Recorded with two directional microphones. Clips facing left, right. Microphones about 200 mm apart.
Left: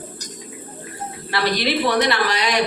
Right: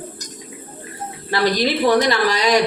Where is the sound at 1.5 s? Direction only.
40° right (ahead or behind).